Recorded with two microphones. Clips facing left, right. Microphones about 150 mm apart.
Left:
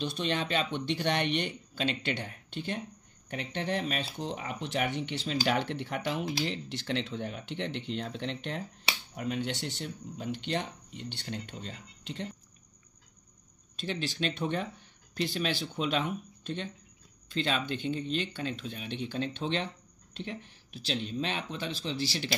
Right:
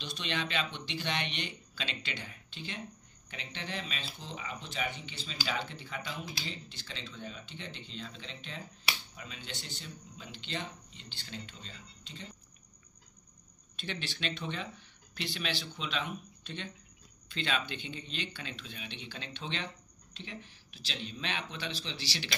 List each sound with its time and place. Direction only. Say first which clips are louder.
0.0 s speech: left 6 dB; 50° left (ahead or behind); by 12.3 s 65° left (ahead or behind)
13.7 s speech: left 7 dB; 40° left (ahead or behind)